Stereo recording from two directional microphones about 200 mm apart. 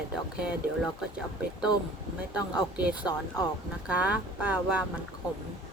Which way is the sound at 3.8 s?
5° right (ahead or behind).